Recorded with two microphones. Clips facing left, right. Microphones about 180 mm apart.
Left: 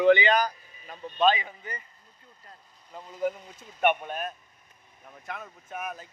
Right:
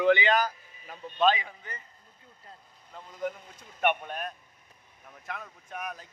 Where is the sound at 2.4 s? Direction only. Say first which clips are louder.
Right 1 dB; 25° right (ahead or behind).